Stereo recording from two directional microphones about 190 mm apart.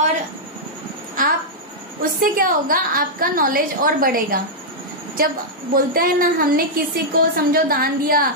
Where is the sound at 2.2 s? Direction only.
50° right (ahead or behind).